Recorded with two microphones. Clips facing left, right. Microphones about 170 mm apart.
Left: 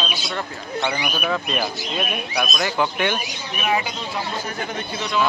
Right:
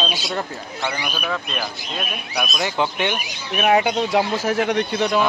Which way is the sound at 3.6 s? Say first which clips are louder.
Right 7 dB; 60° right (ahead or behind).